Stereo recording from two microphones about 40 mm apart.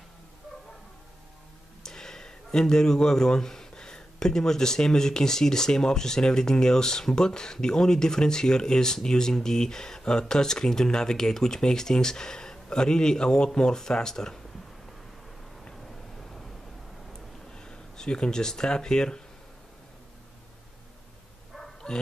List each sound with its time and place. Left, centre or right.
1.8 s speech: centre
17.1 s a sound: centre
21.8 s speech: centre